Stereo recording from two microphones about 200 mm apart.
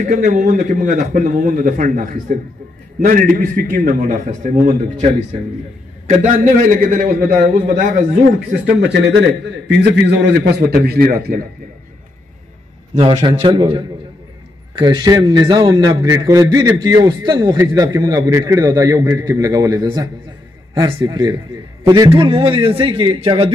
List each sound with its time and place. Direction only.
0.0 s a man's voice: 40° right (ahead or behind)
8.5 s a man's voice: 55° right (ahead or behind)
12.9 s a man's voice: 25° right (ahead or behind)